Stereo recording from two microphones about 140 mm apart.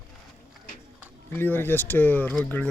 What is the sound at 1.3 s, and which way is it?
Speech, 15° left (ahead or behind).